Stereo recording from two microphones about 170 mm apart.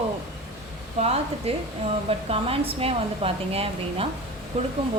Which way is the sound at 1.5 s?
35° right (ahead or behind).